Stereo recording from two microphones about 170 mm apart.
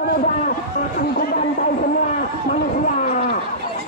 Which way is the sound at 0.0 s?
55° left (ahead or behind).